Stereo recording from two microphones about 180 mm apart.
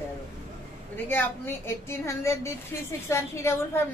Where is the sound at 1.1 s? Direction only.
10° left (ahead or behind).